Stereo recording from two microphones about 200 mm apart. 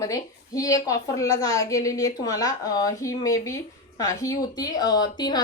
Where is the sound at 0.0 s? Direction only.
15° left (ahead or behind).